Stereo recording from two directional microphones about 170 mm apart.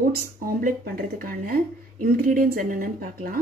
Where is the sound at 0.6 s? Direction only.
55° right (ahead or behind).